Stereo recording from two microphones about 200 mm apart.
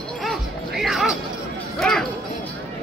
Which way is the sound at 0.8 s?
Centre (ahead or behind).